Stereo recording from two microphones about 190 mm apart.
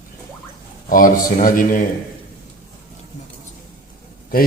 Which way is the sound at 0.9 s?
45° left (ahead or behind).